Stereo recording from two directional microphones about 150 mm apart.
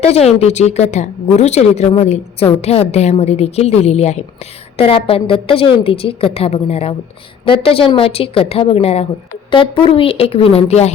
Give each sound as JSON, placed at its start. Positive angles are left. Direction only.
{"t": 0.0, "sound": "a woman's voice", "side_deg": 45}